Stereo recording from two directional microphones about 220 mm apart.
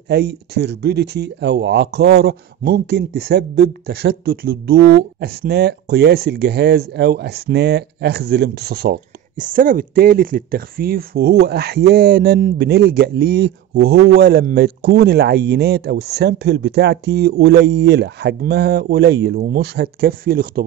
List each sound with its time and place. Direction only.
0.1 s speech: 50° right (ahead or behind)